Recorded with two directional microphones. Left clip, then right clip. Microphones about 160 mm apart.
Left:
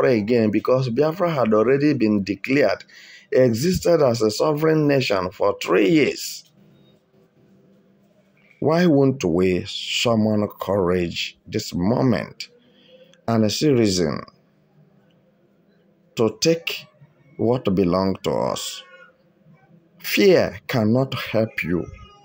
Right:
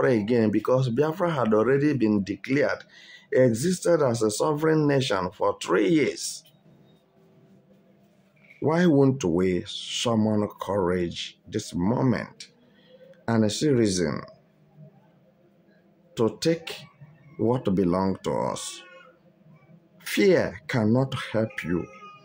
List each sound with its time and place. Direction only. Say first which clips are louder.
0.0 s speech: left 4 dB; 15° left (ahead or behind)
8.6 s speech: left 4 dB; 15° left (ahead or behind)
16.2 s speech: left 5 dB; 15° left (ahead or behind)
20.0 s speech: left 5 dB; 20° left (ahead or behind)